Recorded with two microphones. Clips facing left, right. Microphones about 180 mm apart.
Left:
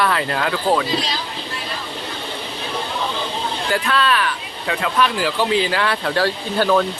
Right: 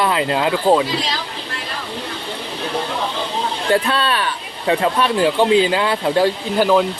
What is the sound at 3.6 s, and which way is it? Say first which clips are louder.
Speech: right 2 dB; 30° right (ahead or behind).